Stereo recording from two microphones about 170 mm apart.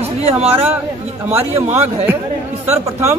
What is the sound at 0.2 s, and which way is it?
Speech, 35° right (ahead or behind).